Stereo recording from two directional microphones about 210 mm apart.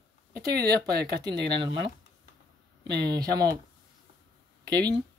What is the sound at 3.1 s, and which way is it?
Speech, 20° right (ahead or behind).